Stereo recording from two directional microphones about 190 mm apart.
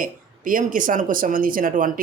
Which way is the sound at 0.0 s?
45° right (ahead or behind).